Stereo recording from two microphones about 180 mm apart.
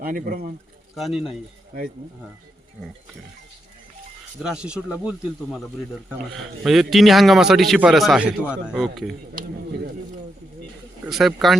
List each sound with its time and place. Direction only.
0.0 s speech: 55° right (ahead or behind)
0.9 s a man's voice: centre (ahead or behind)
4.4 s a man's voice: 5° right (ahead or behind)
11.0 s a man's voice: centre (ahead or behind)